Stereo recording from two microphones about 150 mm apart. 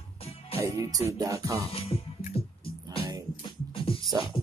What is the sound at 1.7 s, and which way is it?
Music, 40° left (ahead or behind).